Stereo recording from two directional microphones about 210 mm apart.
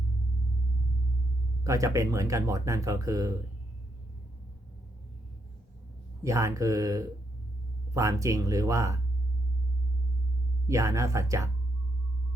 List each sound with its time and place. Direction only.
1.6 s speech: 15° right (ahead or behind)
6.2 s speech: 15° right (ahead or behind)
10.7 s speech: 15° right (ahead or behind)